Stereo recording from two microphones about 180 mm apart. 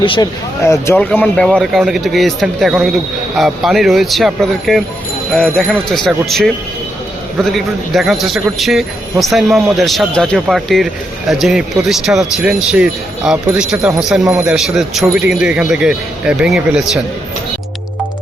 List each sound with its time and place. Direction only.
0.0 s speech: 30° left (ahead or behind)
0.6 s speech: 15° left (ahead or behind); by 17.0 s 5° right (ahead or behind)